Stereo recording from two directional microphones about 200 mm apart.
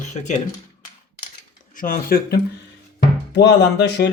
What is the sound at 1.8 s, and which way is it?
Speech, 45° left (ahead or behind).